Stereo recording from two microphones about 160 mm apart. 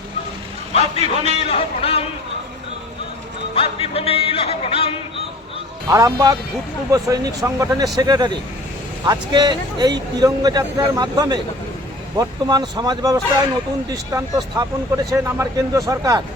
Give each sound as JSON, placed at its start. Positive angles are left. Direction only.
{"t": 0.7, "sound": "speech", "side_deg": 40}
{"t": 1.0, "sound": "a man's voice", "side_deg": -40}
{"t": 1.5, "sound": "speech", "side_deg": 40}
{"t": 3.5, "sound": "speech", "side_deg": 35}
{"t": 5.9, "sound": "a man's voice", "side_deg": -20}